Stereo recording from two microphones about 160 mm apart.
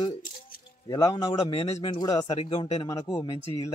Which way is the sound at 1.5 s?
35° left (ahead or behind).